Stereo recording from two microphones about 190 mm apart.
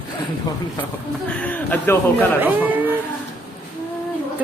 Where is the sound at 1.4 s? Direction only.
10° left (ahead or behind).